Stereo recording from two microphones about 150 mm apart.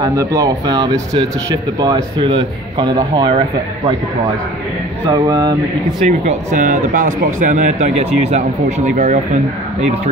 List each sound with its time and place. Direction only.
0.0 s a man's voice: 25° right (ahead or behind)
5.1 s speech: 25° right (ahead or behind)
6.0 s speech: 55° right (ahead or behind)